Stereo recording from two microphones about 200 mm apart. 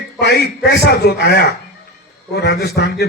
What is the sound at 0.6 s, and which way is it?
A man's voice, 55° left (ahead or behind).